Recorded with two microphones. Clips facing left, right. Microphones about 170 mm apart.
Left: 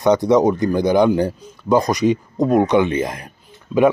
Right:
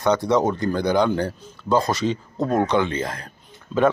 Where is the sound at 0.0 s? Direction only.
20° left (ahead or behind).